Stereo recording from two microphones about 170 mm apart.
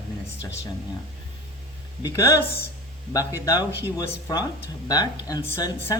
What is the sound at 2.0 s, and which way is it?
Speech, 20° left (ahead or behind).